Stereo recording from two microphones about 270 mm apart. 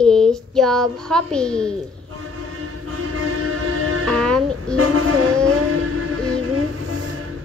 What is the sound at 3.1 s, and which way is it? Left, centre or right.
Music, right.